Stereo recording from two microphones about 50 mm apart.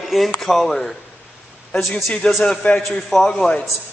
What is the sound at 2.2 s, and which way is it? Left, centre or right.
Speech, left.